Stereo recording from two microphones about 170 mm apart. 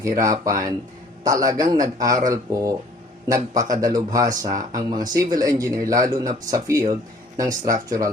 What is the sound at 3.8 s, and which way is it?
Speech, 20° right (ahead or behind).